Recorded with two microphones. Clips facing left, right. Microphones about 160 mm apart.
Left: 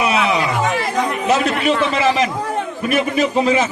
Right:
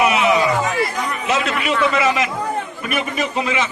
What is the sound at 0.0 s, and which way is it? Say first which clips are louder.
Chatter: right 1 dB; 30° left (ahead or behind).